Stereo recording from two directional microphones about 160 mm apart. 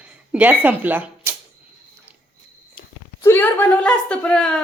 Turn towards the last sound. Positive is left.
turn(degrees=5)  # may be behind; listen again after turning